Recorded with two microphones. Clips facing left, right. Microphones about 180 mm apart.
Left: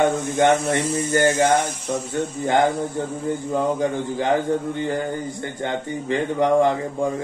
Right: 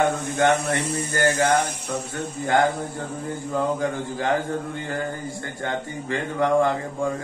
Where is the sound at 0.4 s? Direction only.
20° left (ahead or behind).